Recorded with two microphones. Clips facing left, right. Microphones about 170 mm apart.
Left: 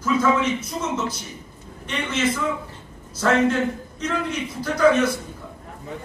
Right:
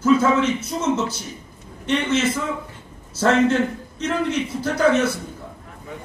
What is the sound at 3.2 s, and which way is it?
A man's voice, 30° right (ahead or behind).